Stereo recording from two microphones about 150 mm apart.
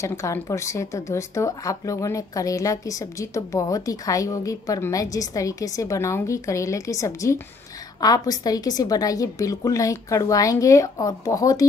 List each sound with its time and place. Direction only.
0.0 s speech: 20° left (ahead or behind)